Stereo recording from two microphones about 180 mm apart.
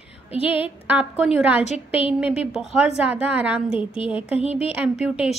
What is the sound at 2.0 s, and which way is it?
A woman's voice, 5° right (ahead or behind).